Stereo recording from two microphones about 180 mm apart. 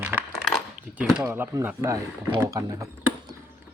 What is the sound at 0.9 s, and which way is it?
Speech, 5° right (ahead or behind).